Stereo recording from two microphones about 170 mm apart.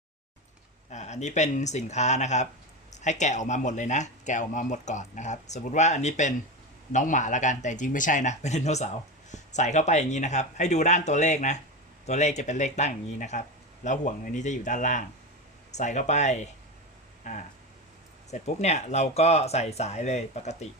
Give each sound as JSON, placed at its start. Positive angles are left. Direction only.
{"t": 0.9, "sound": "speech", "side_deg": 40}